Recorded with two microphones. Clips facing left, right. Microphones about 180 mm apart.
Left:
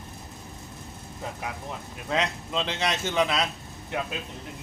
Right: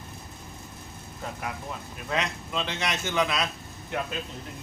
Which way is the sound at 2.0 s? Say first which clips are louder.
Left 2 dB; 25° left (ahead or behind).